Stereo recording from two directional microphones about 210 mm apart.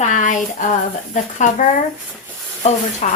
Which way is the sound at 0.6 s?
40° left (ahead or behind).